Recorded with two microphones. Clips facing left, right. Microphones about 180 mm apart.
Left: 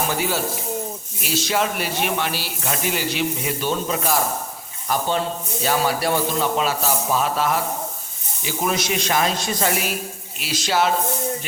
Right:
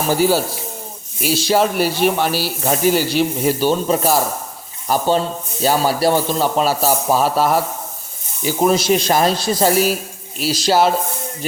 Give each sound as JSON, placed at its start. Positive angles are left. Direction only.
{"t": 0.1, "sound": "speech", "side_deg": -35}